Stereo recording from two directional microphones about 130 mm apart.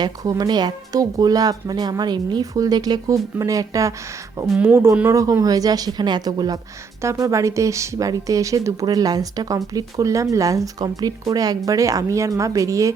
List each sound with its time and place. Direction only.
0.0 s speech: 30° right (ahead or behind)
4.5 s speech: 15° right (ahead or behind)